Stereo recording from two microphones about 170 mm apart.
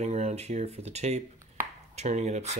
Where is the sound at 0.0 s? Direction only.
40° right (ahead or behind).